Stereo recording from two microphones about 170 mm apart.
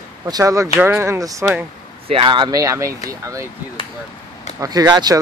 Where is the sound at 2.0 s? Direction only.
30° right (ahead or behind).